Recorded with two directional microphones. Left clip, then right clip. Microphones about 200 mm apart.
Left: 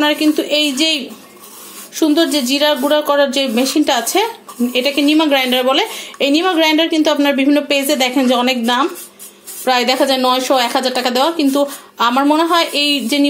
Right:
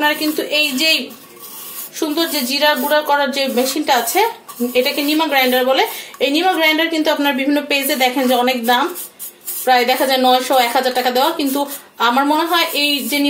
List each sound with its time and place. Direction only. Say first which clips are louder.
0.0 s speech: left 3 dB; 45° left (ahead or behind)
2.0 s a woman's voice: left 5 dB; 50° left (ahead or behind)